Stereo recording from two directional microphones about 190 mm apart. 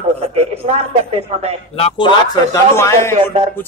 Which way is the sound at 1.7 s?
30° left (ahead or behind).